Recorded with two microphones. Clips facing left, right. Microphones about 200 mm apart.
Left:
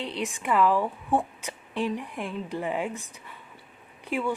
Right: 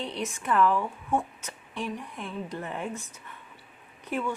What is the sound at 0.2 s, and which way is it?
A woman's voice, 15° left (ahead or behind).